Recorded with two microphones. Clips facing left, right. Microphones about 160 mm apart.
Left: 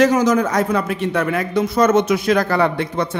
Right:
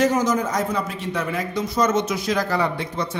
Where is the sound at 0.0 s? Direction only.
90° left.